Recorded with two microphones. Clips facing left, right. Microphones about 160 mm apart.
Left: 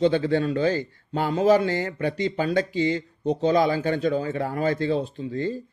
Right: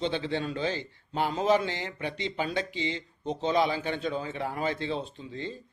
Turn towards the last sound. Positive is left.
turn(degrees=45)  # may be behind; listen again after turning